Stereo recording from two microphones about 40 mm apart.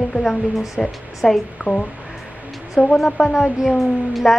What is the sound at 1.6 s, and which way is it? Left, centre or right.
Speech, right.